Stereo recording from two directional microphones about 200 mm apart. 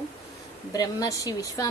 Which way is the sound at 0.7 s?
15° left (ahead or behind).